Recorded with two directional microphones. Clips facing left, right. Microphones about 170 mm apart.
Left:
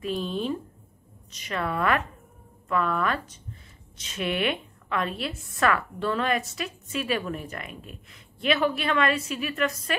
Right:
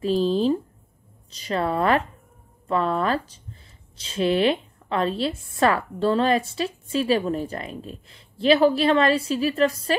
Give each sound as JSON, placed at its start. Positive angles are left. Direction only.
{"t": 0.0, "sound": "a woman's voice", "side_deg": -30}